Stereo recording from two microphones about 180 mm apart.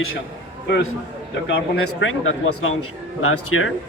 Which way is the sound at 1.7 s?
90° left.